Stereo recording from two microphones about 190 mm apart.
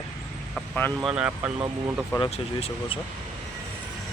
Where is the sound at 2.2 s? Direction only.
30° left (ahead or behind).